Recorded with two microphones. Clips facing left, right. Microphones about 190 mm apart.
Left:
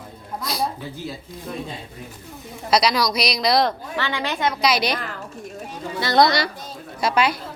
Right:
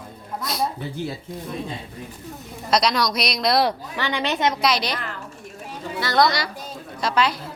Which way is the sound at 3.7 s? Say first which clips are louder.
Even; 15° right (ahead or behind).